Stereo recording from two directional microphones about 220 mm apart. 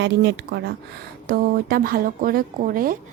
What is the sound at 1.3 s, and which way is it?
Speech, 40° right (ahead or behind).